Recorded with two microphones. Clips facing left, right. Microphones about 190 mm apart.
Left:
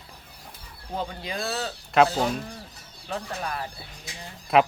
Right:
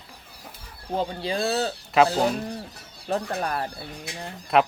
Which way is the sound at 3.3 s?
50° right (ahead or behind).